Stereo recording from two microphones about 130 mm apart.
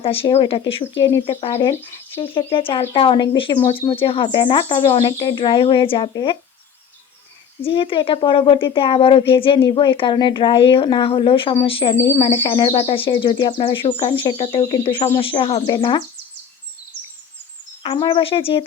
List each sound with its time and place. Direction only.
0.0 s speech: 45° left (ahead or behind)
7.6 s speech: 45° left (ahead or behind)
15.6 s speech: 35° left (ahead or behind)
17.8 s speech: 40° left (ahead or behind)